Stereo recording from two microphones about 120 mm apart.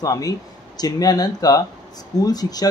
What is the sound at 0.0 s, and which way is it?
Speech, 30° left (ahead or behind).